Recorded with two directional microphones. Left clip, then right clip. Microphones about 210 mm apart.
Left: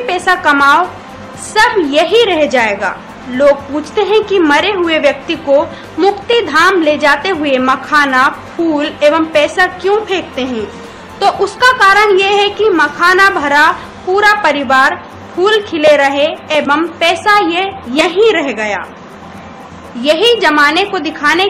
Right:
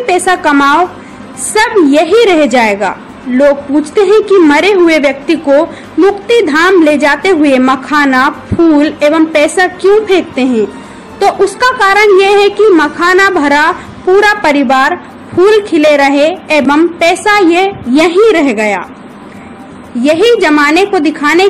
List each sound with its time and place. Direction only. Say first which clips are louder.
0.0 s a woman's voice: right 2 dB; 15° right (ahead or behind)
20.0 s a woman's voice: right 2 dB; 15° right (ahead or behind)